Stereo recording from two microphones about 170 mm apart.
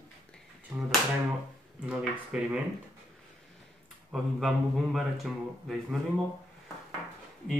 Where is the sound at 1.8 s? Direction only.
5° right (ahead or behind).